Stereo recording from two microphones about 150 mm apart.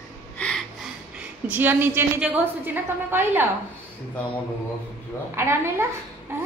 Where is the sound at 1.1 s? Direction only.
10° right (ahead or behind).